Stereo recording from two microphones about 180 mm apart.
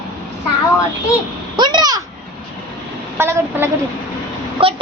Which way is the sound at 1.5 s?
25° right (ahead or behind).